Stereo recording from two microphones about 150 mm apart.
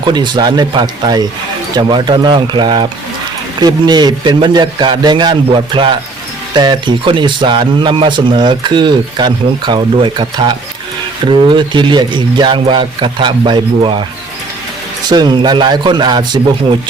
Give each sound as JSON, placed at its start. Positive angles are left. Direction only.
{"t": 0.0, "sound": "speech", "side_deg": -30}
{"t": 15.1, "sound": "speech", "side_deg": -30}